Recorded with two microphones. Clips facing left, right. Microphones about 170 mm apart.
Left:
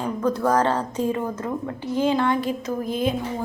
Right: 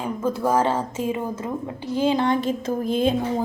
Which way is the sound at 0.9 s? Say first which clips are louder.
Left 1 dB; 20° right (ahead or behind).